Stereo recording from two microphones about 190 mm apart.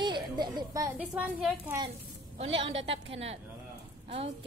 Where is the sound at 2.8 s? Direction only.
30° right (ahead or behind).